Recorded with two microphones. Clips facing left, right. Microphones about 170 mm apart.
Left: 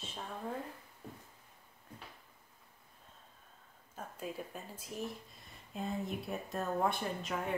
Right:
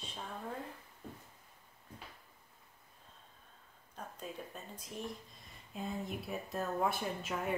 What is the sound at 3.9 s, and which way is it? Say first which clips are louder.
A woman's voice: left 3 dB; 5° left (ahead or behind).